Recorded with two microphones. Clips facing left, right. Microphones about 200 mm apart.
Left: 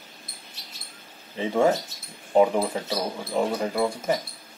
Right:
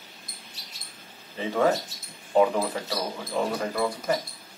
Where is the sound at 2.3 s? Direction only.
20° left (ahead or behind).